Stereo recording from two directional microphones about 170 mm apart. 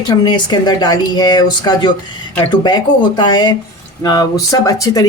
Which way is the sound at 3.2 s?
25° left (ahead or behind).